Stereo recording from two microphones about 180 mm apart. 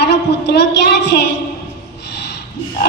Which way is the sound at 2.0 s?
70° left (ahead or behind).